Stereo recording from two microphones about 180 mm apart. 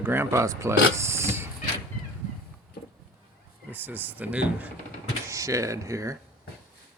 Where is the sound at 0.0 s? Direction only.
15° right (ahead or behind).